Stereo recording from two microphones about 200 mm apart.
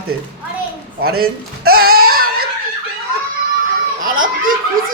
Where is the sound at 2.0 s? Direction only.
50° right (ahead or behind).